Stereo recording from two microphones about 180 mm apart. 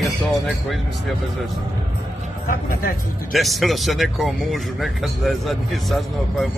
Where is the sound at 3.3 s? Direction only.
Centre (ahead or behind).